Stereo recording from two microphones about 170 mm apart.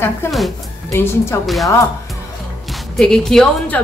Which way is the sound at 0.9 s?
15° left (ahead or behind).